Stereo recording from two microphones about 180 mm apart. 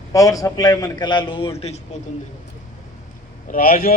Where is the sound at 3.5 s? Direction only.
50° left (ahead or behind).